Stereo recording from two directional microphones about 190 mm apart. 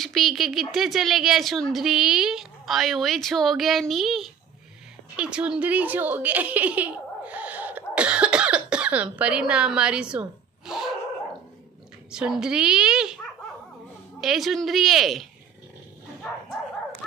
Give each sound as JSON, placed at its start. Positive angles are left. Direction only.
{"t": 0.0, "sound": "speech", "side_deg": 0}
{"t": 12.1, "sound": "speech", "side_deg": -5}
{"t": 14.2, "sound": "speech", "side_deg": 0}